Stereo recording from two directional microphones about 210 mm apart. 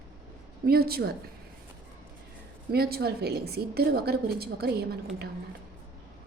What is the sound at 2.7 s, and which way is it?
A woman's voice, 45° right (ahead or behind).